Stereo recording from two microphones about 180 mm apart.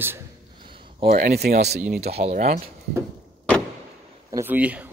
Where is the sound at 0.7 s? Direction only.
30° right (ahead or behind).